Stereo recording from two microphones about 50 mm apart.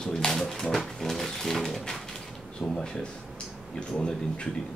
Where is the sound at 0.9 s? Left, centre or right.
Centre.